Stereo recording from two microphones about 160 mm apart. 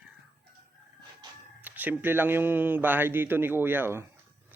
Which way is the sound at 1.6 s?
10° right (ahead or behind).